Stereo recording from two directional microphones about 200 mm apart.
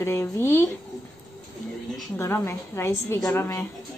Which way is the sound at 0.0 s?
10° left (ahead or behind).